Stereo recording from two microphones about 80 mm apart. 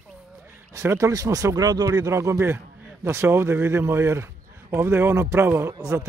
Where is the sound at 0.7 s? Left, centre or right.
Right.